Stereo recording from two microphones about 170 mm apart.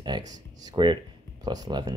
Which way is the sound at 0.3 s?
25° right (ahead or behind).